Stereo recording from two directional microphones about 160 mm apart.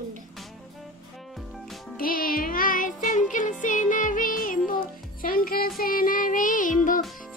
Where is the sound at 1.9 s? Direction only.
65° left (ahead or behind).